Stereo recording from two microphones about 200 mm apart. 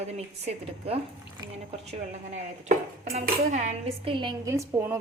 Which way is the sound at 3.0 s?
35° right (ahead or behind).